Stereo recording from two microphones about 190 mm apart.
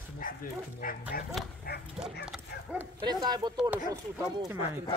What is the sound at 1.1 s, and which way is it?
Speech, 50° left (ahead or behind).